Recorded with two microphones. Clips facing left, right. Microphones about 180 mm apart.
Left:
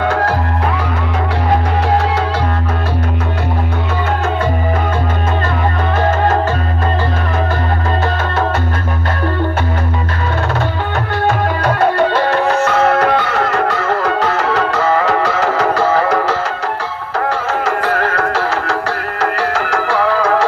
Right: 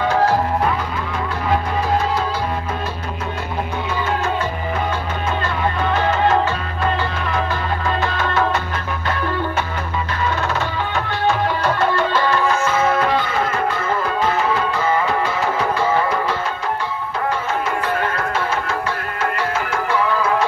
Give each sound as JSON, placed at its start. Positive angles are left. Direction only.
{"t": 11.6, "sound": "music", "side_deg": 60}